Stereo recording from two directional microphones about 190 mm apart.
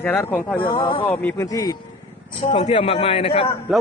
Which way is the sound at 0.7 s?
25° left (ahead or behind).